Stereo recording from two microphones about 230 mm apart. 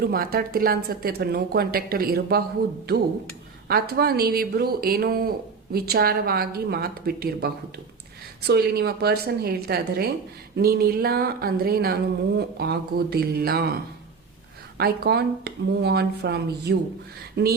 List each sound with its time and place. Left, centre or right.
0.0 s speech: right
3.7 s speech: right
14.8 s speech: right